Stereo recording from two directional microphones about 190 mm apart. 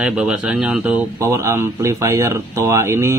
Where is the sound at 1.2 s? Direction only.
15° right (ahead or behind).